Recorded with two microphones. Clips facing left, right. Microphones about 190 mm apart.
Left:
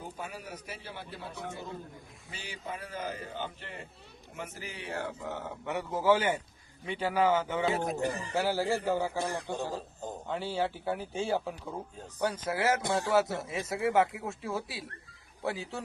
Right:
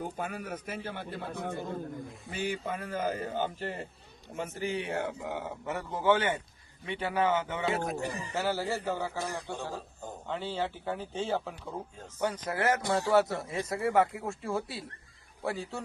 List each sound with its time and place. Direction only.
0.2 s a man's voice: 55° right (ahead or behind)
4.4 s speech: 25° right (ahead or behind)
5.6 s a man's voice: centre (ahead or behind)